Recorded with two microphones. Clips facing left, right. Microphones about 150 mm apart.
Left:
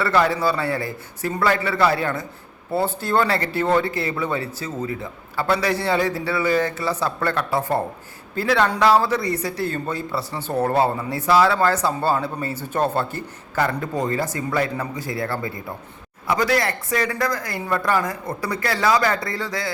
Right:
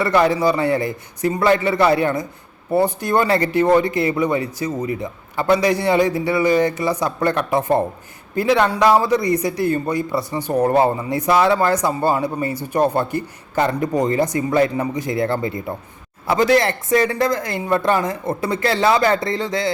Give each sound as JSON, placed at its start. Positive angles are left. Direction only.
{"t": 0.0, "sound": "speech", "side_deg": -15}